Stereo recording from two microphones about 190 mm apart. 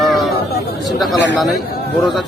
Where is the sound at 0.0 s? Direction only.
Centre (ahead or behind).